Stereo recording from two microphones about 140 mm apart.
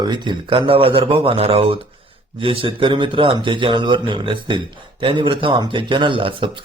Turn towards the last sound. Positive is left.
turn(degrees=-35)  # may be behind; listen again after turning